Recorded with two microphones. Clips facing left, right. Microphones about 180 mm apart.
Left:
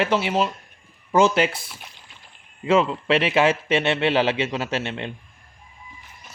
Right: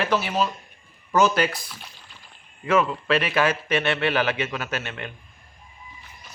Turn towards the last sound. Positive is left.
turn(degrees=25)  # may be behind; listen again after turning